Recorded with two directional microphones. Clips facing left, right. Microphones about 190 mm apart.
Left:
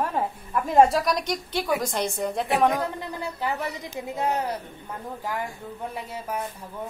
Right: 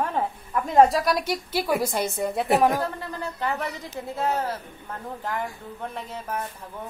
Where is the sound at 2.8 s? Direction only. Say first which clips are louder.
Even; 15° left (ahead or behind).